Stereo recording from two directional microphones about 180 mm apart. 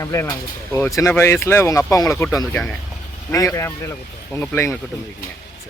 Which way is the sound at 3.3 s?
15° left (ahead or behind).